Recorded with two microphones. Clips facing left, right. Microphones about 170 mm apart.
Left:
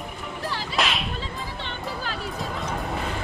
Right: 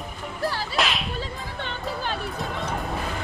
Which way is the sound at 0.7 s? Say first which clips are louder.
Left 3 dB; centre (ahead or behind).